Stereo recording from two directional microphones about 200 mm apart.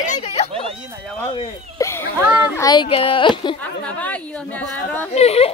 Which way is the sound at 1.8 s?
15° left (ahead or behind).